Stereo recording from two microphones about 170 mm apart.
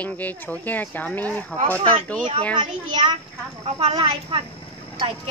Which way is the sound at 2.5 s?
30° right (ahead or behind).